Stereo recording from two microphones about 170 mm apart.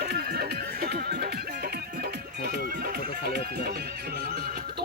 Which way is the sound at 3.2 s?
65° right (ahead or behind).